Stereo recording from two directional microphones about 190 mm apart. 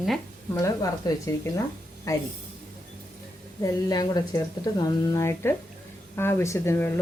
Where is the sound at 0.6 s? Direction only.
15° left (ahead or behind).